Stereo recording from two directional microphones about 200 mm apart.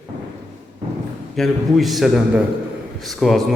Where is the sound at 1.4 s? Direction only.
Centre (ahead or behind).